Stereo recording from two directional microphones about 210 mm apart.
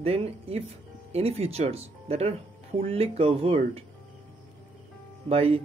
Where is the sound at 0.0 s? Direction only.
30° right (ahead or behind).